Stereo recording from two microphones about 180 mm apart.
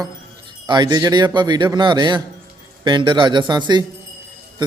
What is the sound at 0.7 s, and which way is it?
A man's voice, 25° right (ahead or behind).